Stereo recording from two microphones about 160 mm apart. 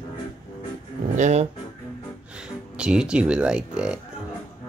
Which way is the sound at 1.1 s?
45° right (ahead or behind).